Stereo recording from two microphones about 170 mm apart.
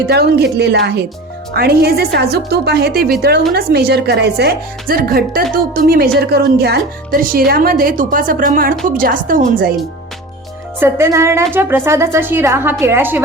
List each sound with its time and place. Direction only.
0.1 s a woman's voice: 70° right (ahead or behind); by 9.7 s 55° right (ahead or behind)
10.8 s speech: 15° right (ahead or behind)